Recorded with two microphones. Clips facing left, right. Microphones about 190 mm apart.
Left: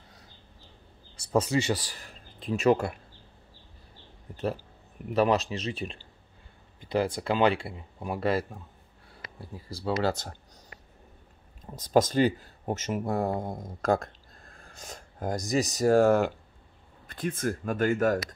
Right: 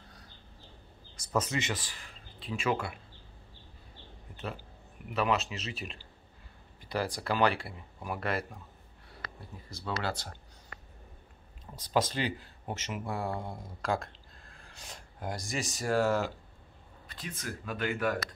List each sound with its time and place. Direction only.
1.1 s speech: 30° left (ahead or behind)
4.3 s speech: 35° left (ahead or behind)
9.7 s speech: 30° left (ahead or behind)
10.0 s speech: 45° left (ahead or behind)
11.6 s speech: 45° left (ahead or behind)